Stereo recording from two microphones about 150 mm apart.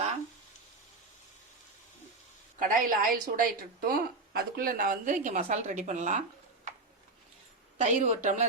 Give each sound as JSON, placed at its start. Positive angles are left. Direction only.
{"t": 2.6, "sound": "a woman's voice", "side_deg": -65}
{"t": 7.8, "sound": "a woman's voice", "side_deg": -55}